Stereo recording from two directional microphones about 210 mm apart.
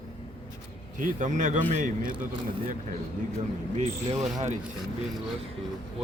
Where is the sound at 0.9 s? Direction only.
35° right (ahead or behind).